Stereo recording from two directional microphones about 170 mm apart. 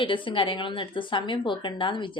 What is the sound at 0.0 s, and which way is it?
Speech, 30° left (ahead or behind).